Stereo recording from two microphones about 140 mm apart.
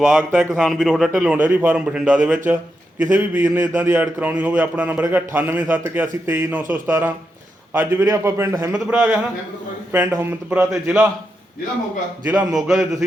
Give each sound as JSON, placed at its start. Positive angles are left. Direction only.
{"t": 0.0, "sound": "a man's voice", "side_deg": -5}
{"t": 8.9, "sound": "a man's voice", "side_deg": -10}
{"t": 12.4, "sound": "a man's voice", "side_deg": 0}